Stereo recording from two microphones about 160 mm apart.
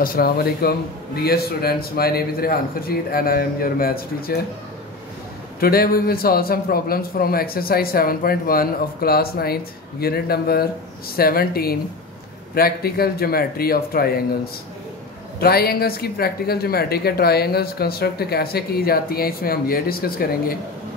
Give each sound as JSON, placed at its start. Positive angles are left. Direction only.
{"t": 0.0, "sound": "speech", "side_deg": 70}
{"t": 5.6, "sound": "speech", "side_deg": 70}